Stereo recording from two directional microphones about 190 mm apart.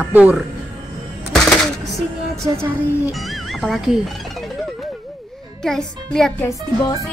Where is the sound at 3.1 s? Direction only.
Centre (ahead or behind).